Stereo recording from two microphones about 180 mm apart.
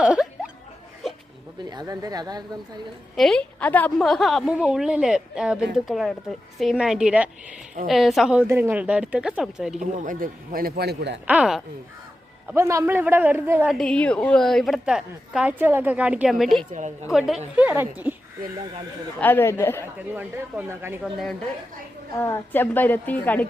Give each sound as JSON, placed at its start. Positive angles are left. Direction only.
{"t": 0.0, "sound": "a sound", "side_deg": -5}
{"t": 1.7, "sound": "speech", "side_deg": -20}
{"t": 3.2, "sound": "a woman's voice", "side_deg": 5}
{"t": 9.8, "sound": "a man's voice", "side_deg": -45}
{"t": 11.3, "sound": "a woman's voice", "side_deg": -5}
{"t": 13.7, "sound": "a woman's voice", "side_deg": 5}
{"t": 16.7, "sound": "a woman's voice", "side_deg": -40}
{"t": 17.1, "sound": "a man's voice", "side_deg": 0}
{"t": 19.2, "sound": "a woman's voice", "side_deg": 10}
{"t": 20.0, "sound": "a man's voice", "side_deg": -10}
{"t": 22.2, "sound": "a woman's voice", "side_deg": 10}